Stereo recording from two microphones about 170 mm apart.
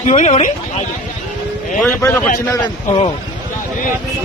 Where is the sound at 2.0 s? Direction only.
10° left (ahead or behind).